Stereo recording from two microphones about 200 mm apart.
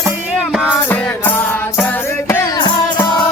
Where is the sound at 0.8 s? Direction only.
10° left (ahead or behind).